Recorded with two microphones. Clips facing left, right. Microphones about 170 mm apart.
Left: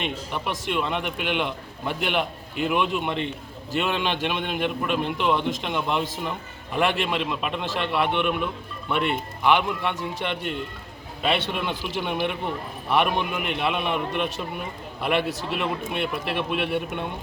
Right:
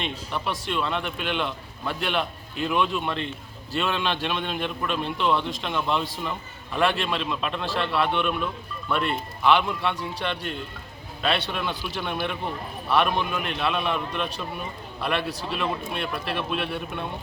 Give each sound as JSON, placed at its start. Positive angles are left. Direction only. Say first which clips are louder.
{"t": 0.0, "sound": "a man's voice", "louder": "left 1 dB", "side_deg": 15}